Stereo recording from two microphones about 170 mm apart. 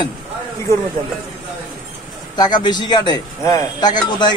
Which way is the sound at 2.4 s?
25° left (ahead or behind).